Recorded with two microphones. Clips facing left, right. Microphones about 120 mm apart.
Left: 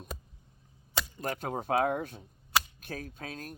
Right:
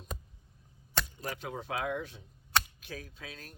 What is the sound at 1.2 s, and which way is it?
Speech, 50° left (ahead or behind).